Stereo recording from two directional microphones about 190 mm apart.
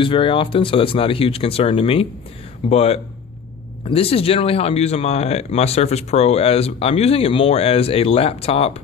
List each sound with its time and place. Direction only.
0.0 s speech: 25° left (ahead or behind)